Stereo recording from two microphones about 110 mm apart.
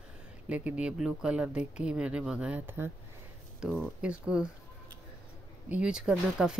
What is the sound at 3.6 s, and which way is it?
Speech, 5° right (ahead or behind).